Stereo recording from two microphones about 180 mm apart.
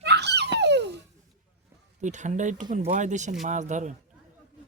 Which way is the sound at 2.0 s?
40° right (ahead or behind).